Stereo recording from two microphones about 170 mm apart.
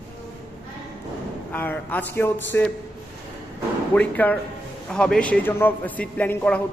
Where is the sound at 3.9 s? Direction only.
10° left (ahead or behind).